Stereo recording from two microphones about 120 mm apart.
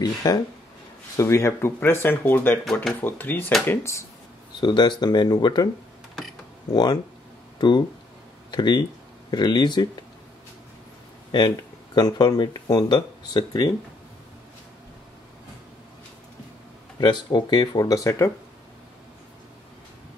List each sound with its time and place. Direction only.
0.0 s speech: 35° left (ahead or behind); by 2.6 s 15° left (ahead or behind)
2.6 s speech: centre (ahead or behind)
3.0 s speech: 15° left (ahead or behind)
4.6 s speech: 40° left (ahead or behind)
6.7 s speech: 35° left (ahead or behind)
11.3 s speech: 40° left (ahead or behind)
17.0 s speech: 40° left (ahead or behind)